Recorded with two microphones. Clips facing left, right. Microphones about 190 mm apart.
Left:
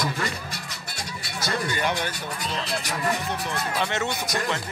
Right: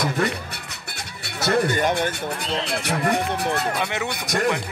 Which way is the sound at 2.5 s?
60° right (ahead or behind).